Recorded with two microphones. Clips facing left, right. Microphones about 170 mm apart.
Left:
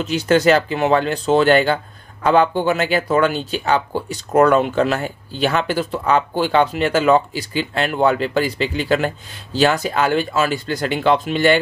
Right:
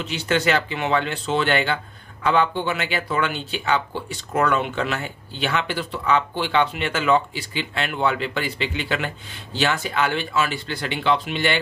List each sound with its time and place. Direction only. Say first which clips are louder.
0.0 s speech: left 7 dB; 40° left (ahead or behind)